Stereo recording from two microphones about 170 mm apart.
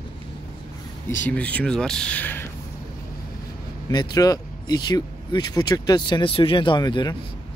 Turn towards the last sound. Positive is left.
turn(degrees=25)  # may be behind; listen again after turning